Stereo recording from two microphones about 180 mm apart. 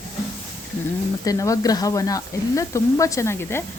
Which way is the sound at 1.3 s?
20° left (ahead or behind).